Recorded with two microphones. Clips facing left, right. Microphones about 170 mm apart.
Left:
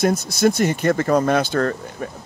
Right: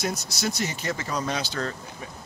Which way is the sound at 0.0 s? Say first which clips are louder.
Left 12 dB; 55° left (ahead or behind).